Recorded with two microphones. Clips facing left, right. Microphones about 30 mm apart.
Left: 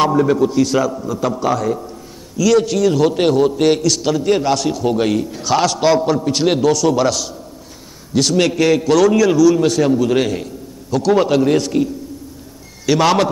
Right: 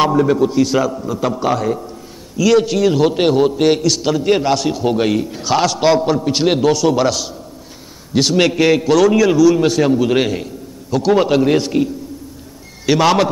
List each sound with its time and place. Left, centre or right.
0.0 s a man's voice: centre